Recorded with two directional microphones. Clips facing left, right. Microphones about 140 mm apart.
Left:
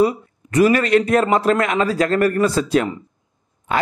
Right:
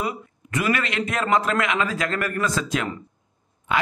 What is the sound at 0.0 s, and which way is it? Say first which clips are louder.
A man's voice: left 11 dB; 35° left (ahead or behind).